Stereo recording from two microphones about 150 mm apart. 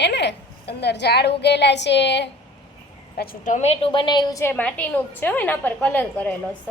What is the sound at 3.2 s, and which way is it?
A woman's voice, 70° left (ahead or behind).